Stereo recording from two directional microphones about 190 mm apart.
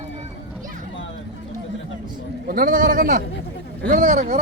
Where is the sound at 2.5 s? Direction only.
50° right (ahead or behind).